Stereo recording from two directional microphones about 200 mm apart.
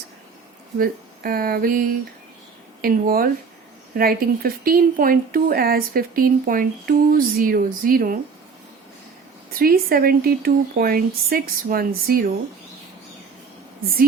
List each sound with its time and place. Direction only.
0.8 s speech: 45° right (ahead or behind)
2.8 s speech: 45° right (ahead or behind)
9.6 s speech: 45° right (ahead or behind)